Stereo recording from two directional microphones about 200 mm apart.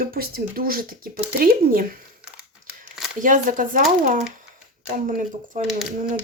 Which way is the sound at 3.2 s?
40° right (ahead or behind).